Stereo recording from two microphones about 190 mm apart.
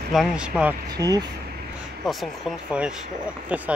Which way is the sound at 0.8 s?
20° right (ahead or behind).